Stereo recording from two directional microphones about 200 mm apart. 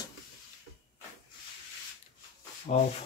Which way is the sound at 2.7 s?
35° left (ahead or behind).